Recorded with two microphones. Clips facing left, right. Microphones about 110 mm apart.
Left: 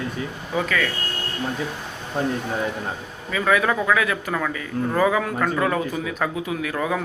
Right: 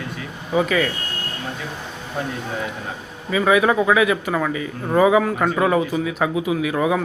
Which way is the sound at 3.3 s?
10° right (ahead or behind).